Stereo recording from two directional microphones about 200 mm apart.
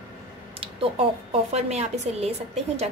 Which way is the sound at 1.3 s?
30° right (ahead or behind).